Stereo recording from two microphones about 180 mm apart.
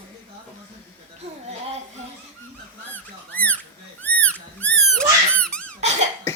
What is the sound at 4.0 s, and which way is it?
Cat, 10° left (ahead or behind).